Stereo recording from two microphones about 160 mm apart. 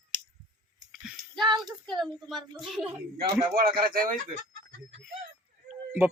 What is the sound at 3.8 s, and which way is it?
Speech, 60° right (ahead or behind).